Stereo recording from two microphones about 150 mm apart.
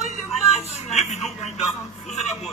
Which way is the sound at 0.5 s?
45° left (ahead or behind).